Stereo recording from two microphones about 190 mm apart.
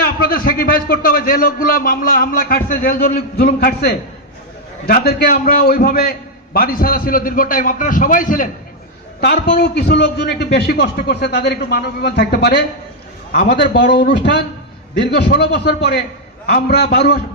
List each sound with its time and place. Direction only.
0.2 s a man's voice: 50° left (ahead or behind)
9.2 s a man's voice: 55° left (ahead or behind)